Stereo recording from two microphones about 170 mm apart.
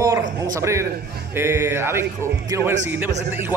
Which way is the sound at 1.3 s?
15° right (ahead or behind).